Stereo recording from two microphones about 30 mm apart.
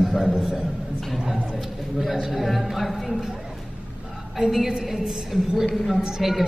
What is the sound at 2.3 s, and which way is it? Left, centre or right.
Speech, centre.